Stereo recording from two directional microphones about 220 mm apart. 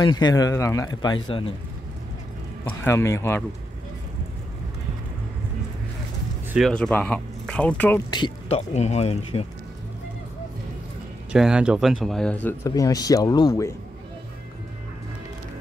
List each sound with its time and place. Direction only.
0.0 s speech: 20° left (ahead or behind)
2.8 s speech: 15° left (ahead or behind)
6.5 s speech: centre (ahead or behind)
8.1 s speech: 25° left (ahead or behind)
11.3 s speech: 5° right (ahead or behind); by 13.7 s 15° left (ahead or behind)